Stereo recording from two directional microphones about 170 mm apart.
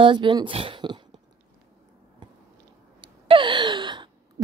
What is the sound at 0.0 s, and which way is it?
Speech, 30° right (ahead or behind).